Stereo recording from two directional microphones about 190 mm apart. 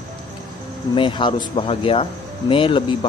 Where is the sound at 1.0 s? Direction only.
25° left (ahead or behind).